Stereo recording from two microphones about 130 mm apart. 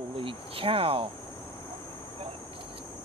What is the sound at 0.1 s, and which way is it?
Speech, 45° right (ahead or behind).